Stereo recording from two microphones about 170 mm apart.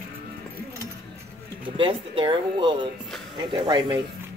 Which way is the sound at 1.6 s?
30° right (ahead or behind).